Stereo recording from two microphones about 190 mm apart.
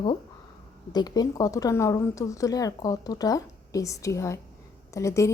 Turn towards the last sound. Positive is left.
turn(degrees=15)  # may be behind; listen again after turning